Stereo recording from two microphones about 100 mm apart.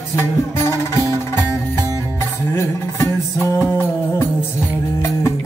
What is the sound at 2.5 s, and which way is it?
Music, 25° left (ahead or behind).